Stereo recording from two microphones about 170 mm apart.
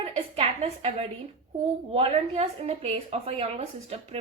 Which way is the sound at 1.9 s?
35° right (ahead or behind).